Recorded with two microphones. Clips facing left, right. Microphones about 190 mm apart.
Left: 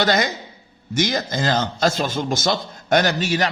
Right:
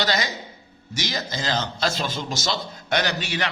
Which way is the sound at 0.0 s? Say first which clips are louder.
Left 6 dB; 50° left (ahead or behind).